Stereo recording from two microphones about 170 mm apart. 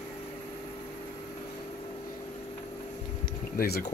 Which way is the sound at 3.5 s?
65° left (ahead or behind).